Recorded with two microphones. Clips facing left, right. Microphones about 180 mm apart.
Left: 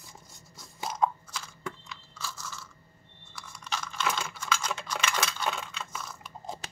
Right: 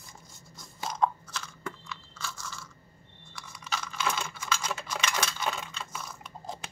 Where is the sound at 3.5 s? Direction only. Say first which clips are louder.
Even; 5° right (ahead or behind).